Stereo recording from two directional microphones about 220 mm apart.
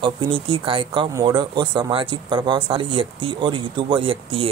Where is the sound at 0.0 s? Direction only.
25° right (ahead or behind).